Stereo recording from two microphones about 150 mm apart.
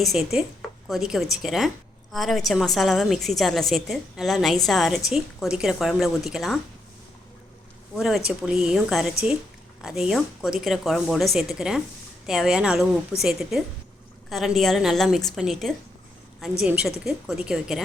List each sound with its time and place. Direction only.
0.0 s a woman's voice: centre (ahead or behind)
7.9 s a woman's voice: centre (ahead or behind)